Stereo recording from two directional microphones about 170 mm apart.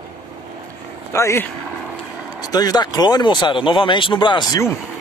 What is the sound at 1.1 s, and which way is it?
Speech, 15° left (ahead or behind).